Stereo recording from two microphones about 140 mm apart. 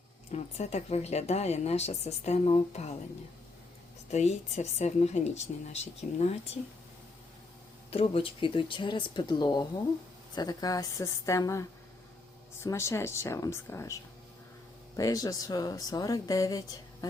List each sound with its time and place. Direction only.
0.3 s speech: 50° left (ahead or behind)
4.1 s speech: 50° left (ahead or behind)
7.9 s speech: 40° left (ahead or behind); by 17.1 s 25° left (ahead or behind)